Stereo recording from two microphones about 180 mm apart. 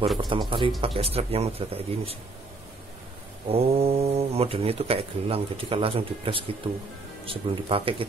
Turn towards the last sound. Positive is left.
turn(degrees=-30)  # may be behind; listen again after turning